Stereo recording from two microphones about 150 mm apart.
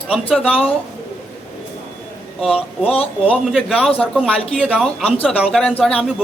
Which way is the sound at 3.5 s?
Centre (ahead or behind).